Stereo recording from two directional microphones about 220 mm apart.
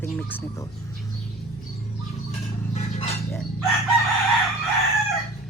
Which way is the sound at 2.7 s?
30° left (ahead or behind).